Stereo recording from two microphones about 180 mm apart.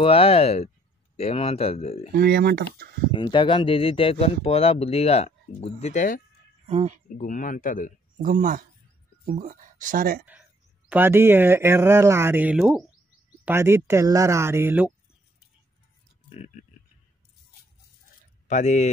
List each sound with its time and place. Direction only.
0.0 s speech: 30° left (ahead or behind)
2.1 s speech: 60° right (ahead or behind)
3.1 s speech: 25° left (ahead or behind); by 6.2 s 45° left (ahead or behind)
6.7 s speech: 35° right (ahead or behind)
7.2 s speech: 50° left (ahead or behind)
8.2 s speech: 50° right (ahead or behind)
10.9 s speech: 10° right (ahead or behind)
13.5 s speech: 15° right (ahead or behind)
18.5 s speech: 40° left (ahead or behind)